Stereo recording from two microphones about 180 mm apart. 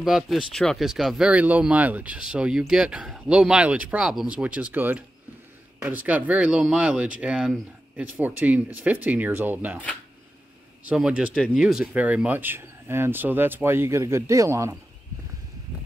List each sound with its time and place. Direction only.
0.0 s speech: centre (ahead or behind)
10.9 s speech: 5° right (ahead or behind)